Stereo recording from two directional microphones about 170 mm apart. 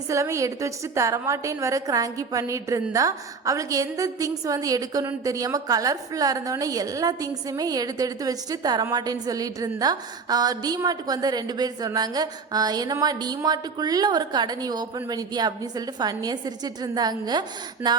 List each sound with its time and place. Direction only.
0.1 s a woman's voice: 15° right (ahead or behind)